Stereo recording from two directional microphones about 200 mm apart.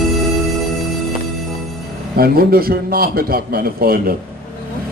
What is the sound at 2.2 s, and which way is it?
A man's voice, 50° right (ahead or behind).